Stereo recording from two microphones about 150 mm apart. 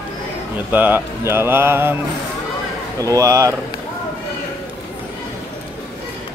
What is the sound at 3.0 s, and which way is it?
Speech, 20° right (ahead or behind).